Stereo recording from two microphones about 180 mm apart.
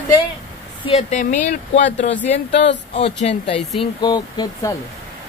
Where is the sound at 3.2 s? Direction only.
30° left (ahead or behind).